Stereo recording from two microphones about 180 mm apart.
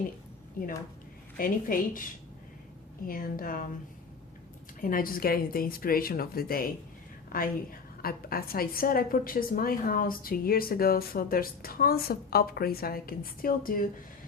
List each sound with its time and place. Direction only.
0.6 s a woman's voice: 50° left (ahead or behind)
3.1 s a woman's voice: 50° left (ahead or behind)
4.8 s a woman's voice: 50° left (ahead or behind)